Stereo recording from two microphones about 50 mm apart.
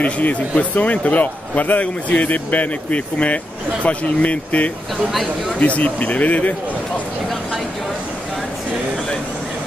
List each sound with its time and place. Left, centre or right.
0.0 s speech: left